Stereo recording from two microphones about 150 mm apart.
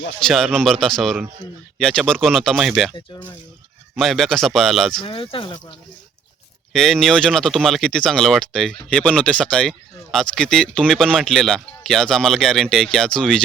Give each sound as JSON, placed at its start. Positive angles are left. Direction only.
{"t": 0.3, "sound": "speech", "side_deg": 5}
{"t": 3.9, "sound": "speech", "side_deg": 0}
{"t": 4.9, "sound": "speech", "side_deg": 35}
{"t": 6.7, "sound": "speech", "side_deg": 0}